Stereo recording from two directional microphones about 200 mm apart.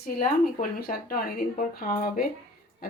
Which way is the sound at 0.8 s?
45° left (ahead or behind).